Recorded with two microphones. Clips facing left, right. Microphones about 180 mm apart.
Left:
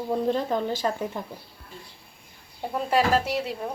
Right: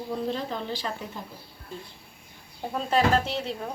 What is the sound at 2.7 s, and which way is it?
Speech, 10° left (ahead or behind).